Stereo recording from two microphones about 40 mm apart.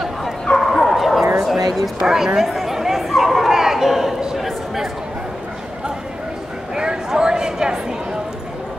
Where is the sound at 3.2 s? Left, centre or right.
Centre.